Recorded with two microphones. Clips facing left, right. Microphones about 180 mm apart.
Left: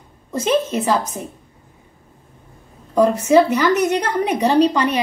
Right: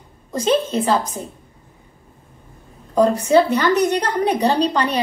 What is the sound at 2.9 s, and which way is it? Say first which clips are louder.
A woman's voice: left 1 dB; 35° right (ahead or behind).